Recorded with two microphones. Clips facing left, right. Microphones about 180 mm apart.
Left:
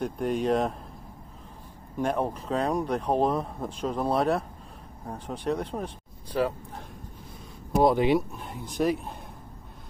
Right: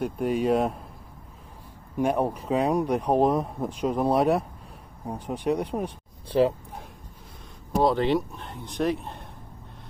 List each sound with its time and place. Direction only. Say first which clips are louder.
0.0 s speech: right 2 dB; 5° right (ahead or behind)
2.0 s speech: right 3 dB; 10° right (ahead or behind)
6.3 s speech: right 5 dB; 25° right (ahead or behind)
7.8 s speech: left 1 dB; 10° left (ahead or behind)